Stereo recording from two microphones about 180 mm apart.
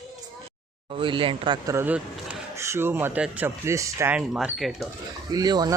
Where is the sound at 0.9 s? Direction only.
30° right (ahead or behind).